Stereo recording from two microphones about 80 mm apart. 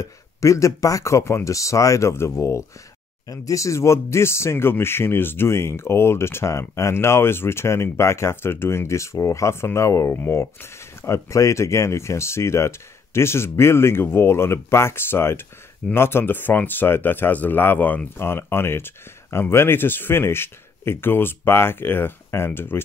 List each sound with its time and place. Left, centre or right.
0.0 s speech: left